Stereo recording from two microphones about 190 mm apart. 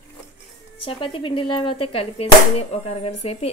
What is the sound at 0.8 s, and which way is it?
Speech, 25° left (ahead or behind).